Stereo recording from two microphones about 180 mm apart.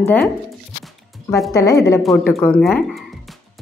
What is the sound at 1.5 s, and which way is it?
A woman's voice, 15° left (ahead or behind).